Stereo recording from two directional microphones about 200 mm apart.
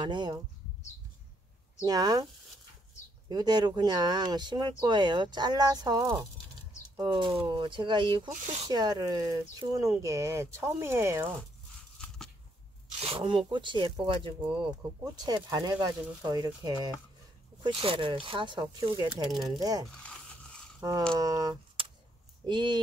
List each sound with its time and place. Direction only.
0.0 s speech: 20° right (ahead or behind)
1.9 s speech: 20° right (ahead or behind)
3.3 s speech: 20° right (ahead or behind)
13.0 s speech: 25° right (ahead or behind)
19.3 s speech: centre (ahead or behind)
19.6 s speech: 20° right (ahead or behind)
21.2 s speech: 15° right (ahead or behind)